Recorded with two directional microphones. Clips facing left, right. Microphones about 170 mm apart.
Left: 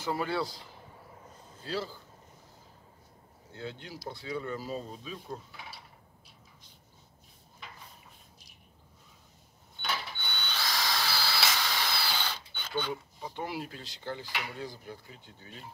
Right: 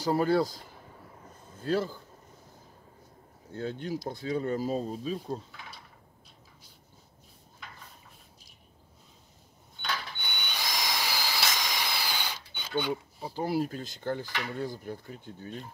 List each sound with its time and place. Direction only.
0.0 s speech: 40° right (ahead or behind)
3.5 s speech: 45° right (ahead or behind)
10.1 s drill: 15° right (ahead or behind)
12.9 s speech: 35° right (ahead or behind)